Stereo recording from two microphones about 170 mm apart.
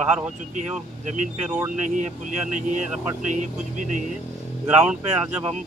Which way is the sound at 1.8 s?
45° right (ahead or behind).